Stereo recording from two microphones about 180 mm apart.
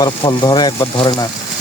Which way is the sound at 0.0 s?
25° left (ahead or behind).